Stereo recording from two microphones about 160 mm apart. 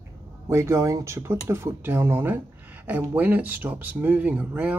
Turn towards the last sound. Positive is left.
turn(degrees=-10)  # may be behind; listen again after turning